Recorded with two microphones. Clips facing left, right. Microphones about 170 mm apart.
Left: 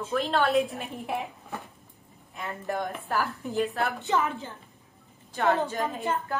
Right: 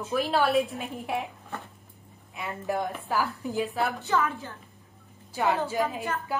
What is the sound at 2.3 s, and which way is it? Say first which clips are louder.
A woman's voice: right 2 dB; centre (ahead or behind).